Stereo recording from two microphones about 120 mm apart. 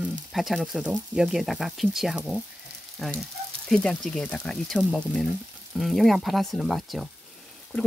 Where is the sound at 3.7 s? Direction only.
5° left (ahead or behind).